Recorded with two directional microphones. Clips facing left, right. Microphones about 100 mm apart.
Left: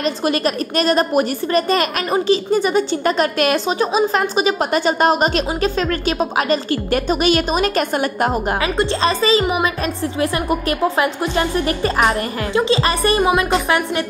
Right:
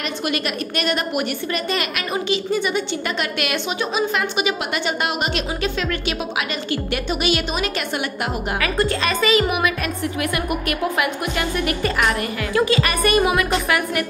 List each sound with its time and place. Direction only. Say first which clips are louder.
0.0 s a woman's voice: left 6 dB; 35° left (ahead or behind)
8.5 s a woman's voice: left 2 dB; 25° left (ahead or behind)